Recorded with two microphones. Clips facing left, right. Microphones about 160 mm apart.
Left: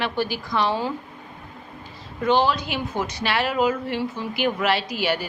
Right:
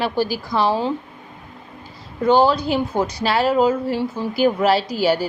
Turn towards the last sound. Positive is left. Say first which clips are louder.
# right 6 dB
turn(degrees=-35)  # may be behind; listen again after turning